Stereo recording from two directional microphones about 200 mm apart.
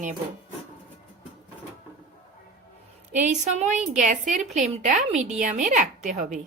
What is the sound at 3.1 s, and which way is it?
Speech, 35° right (ahead or behind).